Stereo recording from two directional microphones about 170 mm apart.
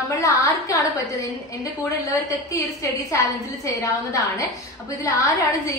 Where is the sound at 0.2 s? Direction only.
20° left (ahead or behind).